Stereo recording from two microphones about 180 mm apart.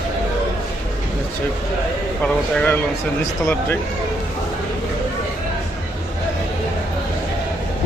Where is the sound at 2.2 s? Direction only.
10° left (ahead or behind).